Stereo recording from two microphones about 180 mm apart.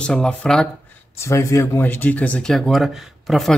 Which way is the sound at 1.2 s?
15° left (ahead or behind).